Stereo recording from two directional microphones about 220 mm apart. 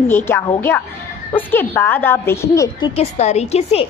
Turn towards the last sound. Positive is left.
turn(degrees=30)  # may be behind; listen again after turning